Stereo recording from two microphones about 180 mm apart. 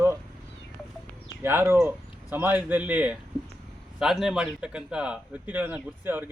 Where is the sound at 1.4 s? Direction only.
10° right (ahead or behind).